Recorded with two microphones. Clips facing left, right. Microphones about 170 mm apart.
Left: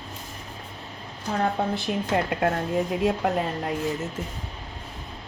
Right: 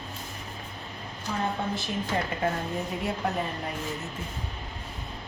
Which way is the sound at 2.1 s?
75° left (ahead or behind).